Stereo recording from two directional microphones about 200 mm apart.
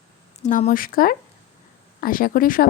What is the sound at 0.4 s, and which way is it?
A woman's voice, 40° left (ahead or behind).